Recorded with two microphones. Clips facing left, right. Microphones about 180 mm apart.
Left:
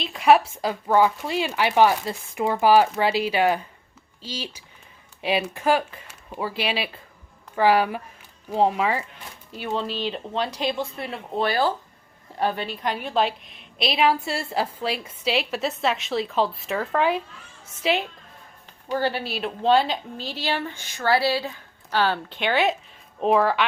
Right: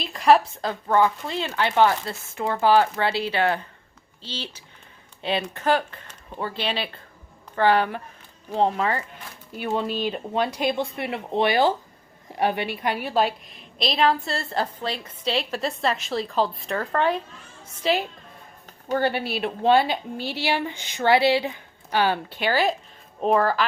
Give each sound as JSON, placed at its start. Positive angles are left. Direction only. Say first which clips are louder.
{"t": 0.0, "sound": "a woman's voice", "louder": "even", "side_deg": 5}
{"t": 10.0, "sound": "a woman's voice", "louder": "right 2 dB", "side_deg": -10}
{"t": 19.6, "sound": "a woman's voice", "louder": "right 1 dB", "side_deg": -10}